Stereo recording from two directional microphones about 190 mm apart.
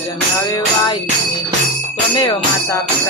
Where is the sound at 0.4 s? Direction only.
20° left (ahead or behind).